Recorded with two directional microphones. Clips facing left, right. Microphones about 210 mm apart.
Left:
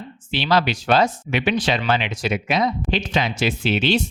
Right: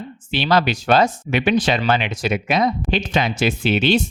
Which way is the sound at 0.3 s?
50° right (ahead or behind).